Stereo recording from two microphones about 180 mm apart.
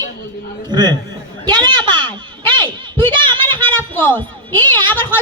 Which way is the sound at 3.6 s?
10° left (ahead or behind).